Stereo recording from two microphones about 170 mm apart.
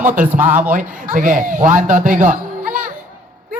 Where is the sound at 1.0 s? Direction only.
50° right (ahead or behind).